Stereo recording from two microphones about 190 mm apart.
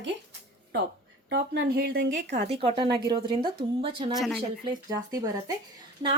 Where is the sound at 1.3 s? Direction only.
65° right (ahead or behind).